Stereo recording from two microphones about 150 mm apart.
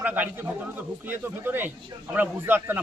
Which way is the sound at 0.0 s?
10° right (ahead or behind).